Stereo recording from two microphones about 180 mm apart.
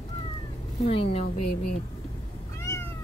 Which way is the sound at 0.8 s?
35° left (ahead or behind).